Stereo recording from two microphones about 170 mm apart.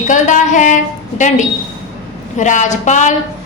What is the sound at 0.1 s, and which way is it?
Speech, 45° left (ahead or behind).